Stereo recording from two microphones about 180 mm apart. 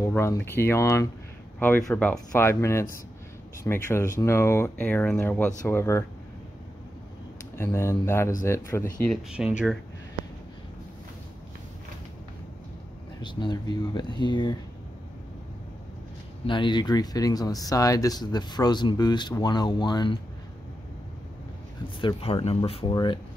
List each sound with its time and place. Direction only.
0.0 s speech: 15° left (ahead or behind)
7.5 s speech: 15° left (ahead or behind)
9.1 s speech: 5° right (ahead or behind)
13.2 s speech: 25° left (ahead or behind)
16.4 s speech: 25° left (ahead or behind)
22.0 s speech: 30° left (ahead or behind)